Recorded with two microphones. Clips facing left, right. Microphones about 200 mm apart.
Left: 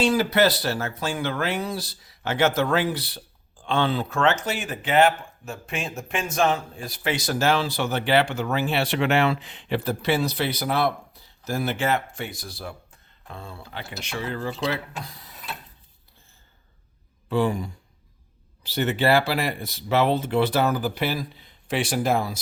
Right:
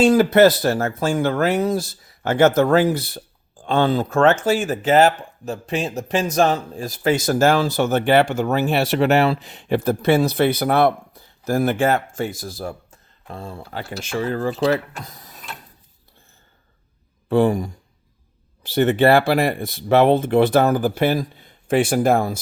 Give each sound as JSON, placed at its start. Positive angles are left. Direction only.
{"t": 0.0, "sound": "speech", "side_deg": -50}
{"t": 15.0, "sound": "ratchet", "side_deg": -45}
{"t": 17.2, "sound": "speech", "side_deg": -50}